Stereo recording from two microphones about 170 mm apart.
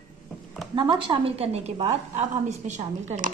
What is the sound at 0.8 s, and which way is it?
A woman's voice, 30° right (ahead or behind).